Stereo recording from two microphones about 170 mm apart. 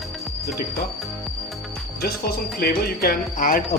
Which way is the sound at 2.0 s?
65° left (ahead or behind).